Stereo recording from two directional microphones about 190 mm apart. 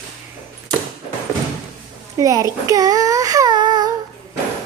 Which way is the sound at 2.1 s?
15° right (ahead or behind).